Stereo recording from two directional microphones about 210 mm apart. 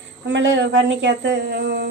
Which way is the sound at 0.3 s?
60° right (ahead or behind).